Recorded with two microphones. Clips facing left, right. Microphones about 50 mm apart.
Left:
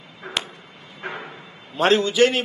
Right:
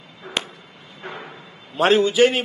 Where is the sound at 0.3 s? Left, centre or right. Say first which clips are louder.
Right 1 dB; centre.